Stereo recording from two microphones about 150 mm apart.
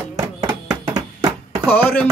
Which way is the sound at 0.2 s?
20° right (ahead or behind).